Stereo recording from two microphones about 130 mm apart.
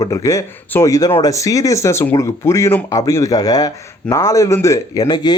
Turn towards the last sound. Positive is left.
turn(degrees=30)  # may be behind; listen again after turning